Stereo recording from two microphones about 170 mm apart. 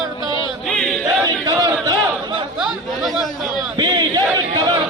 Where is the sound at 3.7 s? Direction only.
25° right (ahead or behind).